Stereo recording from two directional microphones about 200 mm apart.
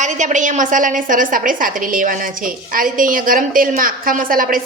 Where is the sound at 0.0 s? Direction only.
35° right (ahead or behind).